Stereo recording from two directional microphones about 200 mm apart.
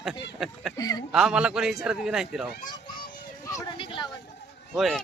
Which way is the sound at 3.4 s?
15° left (ahead or behind).